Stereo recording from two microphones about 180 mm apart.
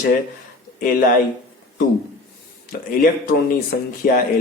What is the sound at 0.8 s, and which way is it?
Speech, 55° left (ahead or behind).